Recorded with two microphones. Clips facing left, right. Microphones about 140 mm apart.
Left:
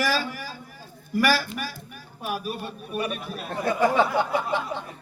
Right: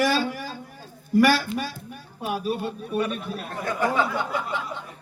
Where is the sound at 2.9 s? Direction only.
15° left (ahead or behind).